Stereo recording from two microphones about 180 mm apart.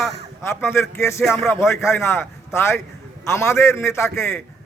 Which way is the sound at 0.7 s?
15° left (ahead or behind).